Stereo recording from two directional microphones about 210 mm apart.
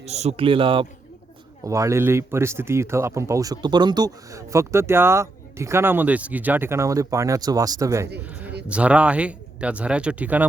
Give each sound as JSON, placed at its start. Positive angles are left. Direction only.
{"t": 0.0, "sound": "a man's voice", "side_deg": -30}
{"t": 1.6, "sound": "speech", "side_deg": -15}